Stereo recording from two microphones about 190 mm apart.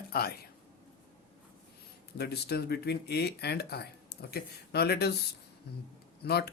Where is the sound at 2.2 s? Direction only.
55° left (ahead or behind).